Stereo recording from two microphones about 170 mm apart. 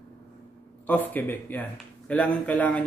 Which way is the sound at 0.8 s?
10° left (ahead or behind).